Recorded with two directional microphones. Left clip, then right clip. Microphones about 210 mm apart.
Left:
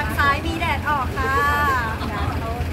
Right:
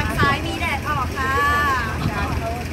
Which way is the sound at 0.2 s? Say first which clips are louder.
Left 1 dB; 45° left (ahead or behind).